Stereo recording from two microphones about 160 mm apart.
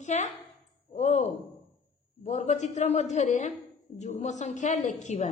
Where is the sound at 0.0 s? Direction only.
50° left (ahead or behind).